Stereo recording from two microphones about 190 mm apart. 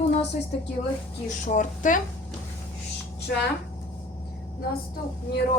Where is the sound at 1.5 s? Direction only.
40° left (ahead or behind).